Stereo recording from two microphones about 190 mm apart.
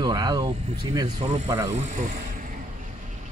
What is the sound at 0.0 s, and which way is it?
Speech, 20° right (ahead or behind).